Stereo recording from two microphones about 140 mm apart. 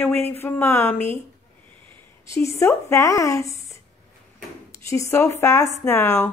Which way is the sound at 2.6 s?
20° left (ahead or behind).